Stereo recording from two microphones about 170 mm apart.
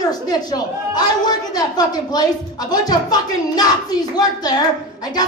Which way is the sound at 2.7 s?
25° left (ahead or behind).